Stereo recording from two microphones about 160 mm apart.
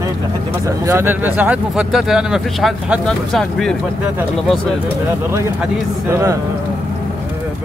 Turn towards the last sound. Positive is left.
turn(degrees=-15)  # may be behind; listen again after turning